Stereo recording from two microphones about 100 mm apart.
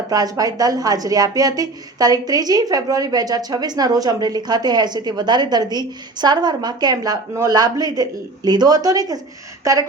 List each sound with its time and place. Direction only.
0.1 s a woman's voice: 40° right (ahead or behind)